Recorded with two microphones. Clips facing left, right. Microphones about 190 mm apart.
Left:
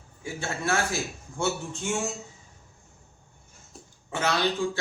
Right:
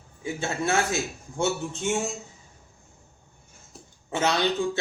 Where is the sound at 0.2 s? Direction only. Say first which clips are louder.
Right 4 dB; 20° right (ahead or behind).